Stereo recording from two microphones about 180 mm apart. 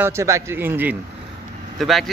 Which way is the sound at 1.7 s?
Centre (ahead or behind).